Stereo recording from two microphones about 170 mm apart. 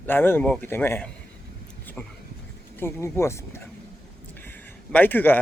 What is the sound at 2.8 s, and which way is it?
Speech, 15° left (ahead or behind).